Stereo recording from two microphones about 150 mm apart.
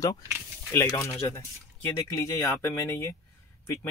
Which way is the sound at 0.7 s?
15° left (ahead or behind).